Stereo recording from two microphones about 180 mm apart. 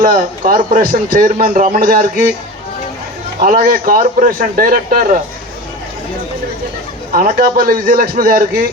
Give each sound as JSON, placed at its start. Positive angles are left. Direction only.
{"t": 0.0, "sound": "a man's voice", "side_deg": -50}
{"t": 3.4, "sound": "a man's voice", "side_deg": -55}
{"t": 7.2, "sound": "a man's voice", "side_deg": -50}